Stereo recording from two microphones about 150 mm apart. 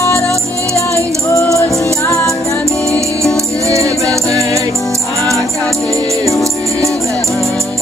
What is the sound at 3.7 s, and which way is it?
Music, 20° right (ahead or behind).